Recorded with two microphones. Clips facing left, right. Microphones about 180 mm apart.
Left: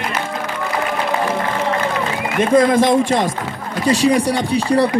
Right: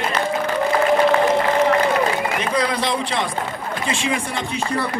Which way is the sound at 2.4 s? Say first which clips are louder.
Left 9 dB; 45° left (ahead or behind).